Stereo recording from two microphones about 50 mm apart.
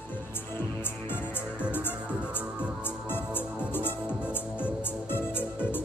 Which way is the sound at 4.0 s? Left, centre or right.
Right.